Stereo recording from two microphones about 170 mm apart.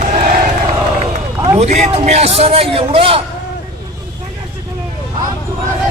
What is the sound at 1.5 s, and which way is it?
A man's voice, 40° right (ahead or behind).